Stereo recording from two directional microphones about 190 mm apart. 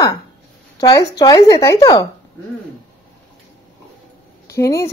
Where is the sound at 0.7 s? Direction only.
20° left (ahead or behind).